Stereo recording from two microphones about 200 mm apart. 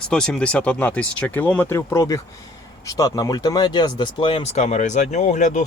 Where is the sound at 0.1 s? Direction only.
5° left (ahead or behind).